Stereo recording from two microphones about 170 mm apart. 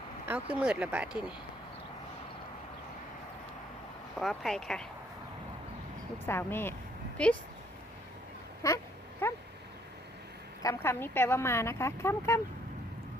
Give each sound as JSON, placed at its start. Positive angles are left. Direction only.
{"t": 0.3, "sound": "speech", "side_deg": -10}
{"t": 4.2, "sound": "speech", "side_deg": 0}
{"t": 6.2, "sound": "speech", "side_deg": 15}
{"t": 8.6, "sound": "speech", "side_deg": 20}
{"t": 9.2, "sound": "a sound", "side_deg": 10}
{"t": 10.6, "sound": "speech", "side_deg": 15}